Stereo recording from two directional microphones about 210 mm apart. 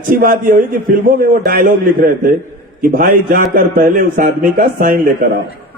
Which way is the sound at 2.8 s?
45° right (ahead or behind).